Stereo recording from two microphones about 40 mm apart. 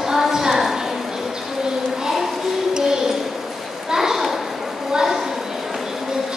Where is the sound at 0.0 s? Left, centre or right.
Centre.